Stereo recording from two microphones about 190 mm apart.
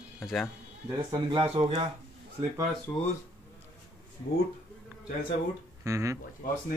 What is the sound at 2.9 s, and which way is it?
Speech, 10° left (ahead or behind).